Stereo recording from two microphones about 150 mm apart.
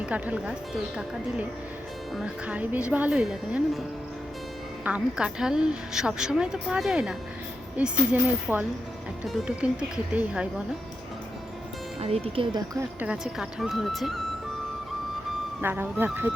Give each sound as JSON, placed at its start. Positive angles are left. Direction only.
{"t": 0.0, "sound": "a woman's voice", "side_deg": -10}
{"t": 11.9, "sound": "speech", "side_deg": -40}
{"t": 13.0, "sound": "a woman's voice", "side_deg": -5}
{"t": 15.6, "sound": "speech", "side_deg": -15}